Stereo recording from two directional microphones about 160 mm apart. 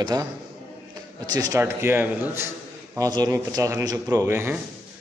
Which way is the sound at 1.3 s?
20° right (ahead or behind).